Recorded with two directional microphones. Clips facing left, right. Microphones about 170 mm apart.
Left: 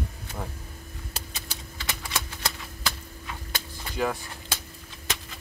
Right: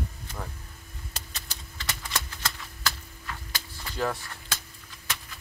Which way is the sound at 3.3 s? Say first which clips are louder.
Left 2 dB; 15° left (ahead or behind).